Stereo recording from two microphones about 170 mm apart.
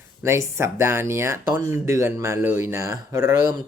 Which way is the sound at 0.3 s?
15° right (ahead or behind).